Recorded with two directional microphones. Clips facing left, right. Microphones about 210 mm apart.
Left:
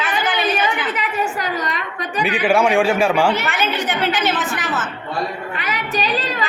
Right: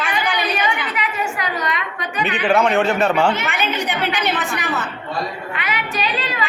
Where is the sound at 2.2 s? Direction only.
10° left (ahead or behind).